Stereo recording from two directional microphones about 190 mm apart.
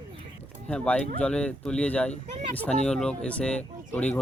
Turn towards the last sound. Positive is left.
turn(degrees=5)  # may be behind; listen again after turning